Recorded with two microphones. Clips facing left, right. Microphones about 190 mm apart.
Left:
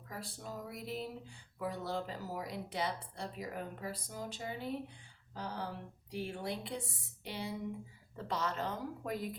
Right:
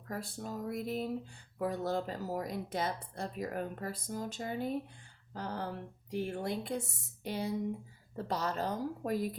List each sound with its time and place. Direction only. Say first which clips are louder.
0.1 s speech: right 5 dB; 50° right (ahead or behind)